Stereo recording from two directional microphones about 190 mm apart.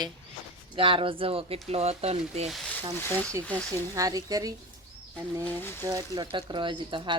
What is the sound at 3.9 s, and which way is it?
Speech, 20° right (ahead or behind).